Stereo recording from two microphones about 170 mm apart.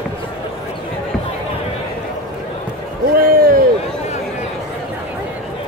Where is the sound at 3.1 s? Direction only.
60° right (ahead or behind).